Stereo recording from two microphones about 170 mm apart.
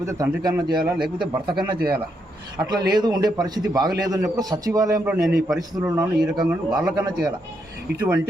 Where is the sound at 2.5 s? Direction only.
25° right (ahead or behind).